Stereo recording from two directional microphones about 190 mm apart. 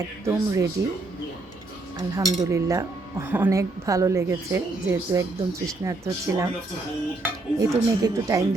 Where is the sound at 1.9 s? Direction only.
20° right (ahead or behind).